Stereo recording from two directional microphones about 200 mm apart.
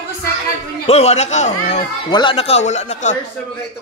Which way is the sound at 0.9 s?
30° left (ahead or behind).